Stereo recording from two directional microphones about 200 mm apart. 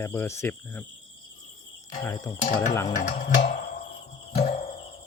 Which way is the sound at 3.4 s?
40° left (ahead or behind).